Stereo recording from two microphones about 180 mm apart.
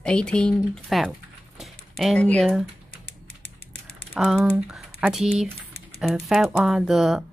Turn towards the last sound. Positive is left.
turn(degrees=-5)  # may be behind; listen again after turning